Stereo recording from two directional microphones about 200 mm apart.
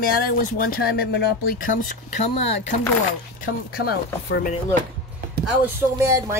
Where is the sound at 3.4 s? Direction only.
50° left (ahead or behind).